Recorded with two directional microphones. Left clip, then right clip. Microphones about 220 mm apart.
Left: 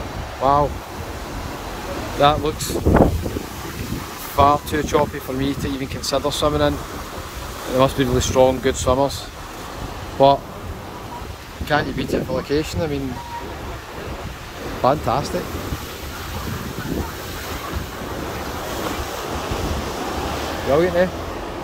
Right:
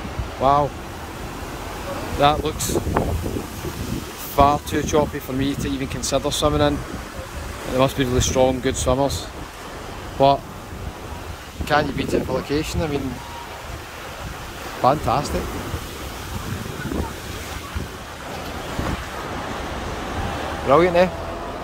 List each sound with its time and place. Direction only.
0.4 s speech: centre (ahead or behind)
2.1 s speech: centre (ahead or behind)
4.4 s speech: centre (ahead or behind)
7.7 s speech: centre (ahead or behind)
10.1 s speech: centre (ahead or behind)
11.7 s speech: 5° right (ahead or behind)
14.8 s speech: centre (ahead or behind)
20.7 s speech: 5° right (ahead or behind)